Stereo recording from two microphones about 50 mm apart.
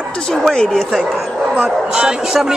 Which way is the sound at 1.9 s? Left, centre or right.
Centre.